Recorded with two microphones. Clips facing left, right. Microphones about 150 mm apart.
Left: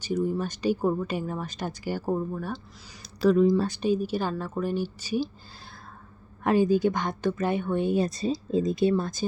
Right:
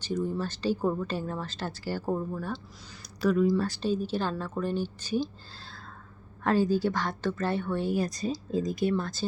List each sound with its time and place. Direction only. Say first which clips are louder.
0.0 s speech: left 3 dB; 10° left (ahead or behind)
3.0 s a sound: left 4 dB; 30° left (ahead or behind)
3.5 s speech: left 3 dB; 20° left (ahead or behind)